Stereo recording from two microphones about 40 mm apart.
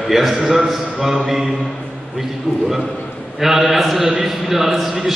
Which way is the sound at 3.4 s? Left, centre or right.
Centre.